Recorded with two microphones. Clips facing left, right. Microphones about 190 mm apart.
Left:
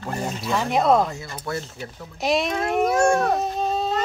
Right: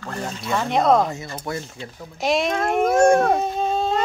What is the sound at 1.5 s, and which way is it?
Speech, 20° right (ahead or behind).